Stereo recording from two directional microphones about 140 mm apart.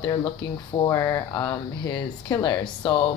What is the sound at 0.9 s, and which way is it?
Speech, 25° left (ahead or behind).